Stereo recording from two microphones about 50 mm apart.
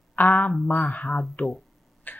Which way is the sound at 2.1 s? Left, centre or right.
Left.